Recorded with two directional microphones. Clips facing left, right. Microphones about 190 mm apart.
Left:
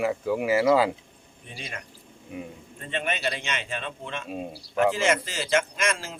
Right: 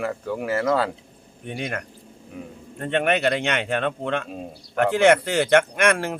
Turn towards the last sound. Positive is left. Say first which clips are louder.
# right 8 dB
turn(degrees=-65)  # may be behind; listen again after turning